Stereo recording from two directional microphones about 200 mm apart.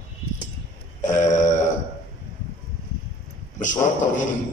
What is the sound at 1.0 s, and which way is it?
Speech, 40° left (ahead or behind).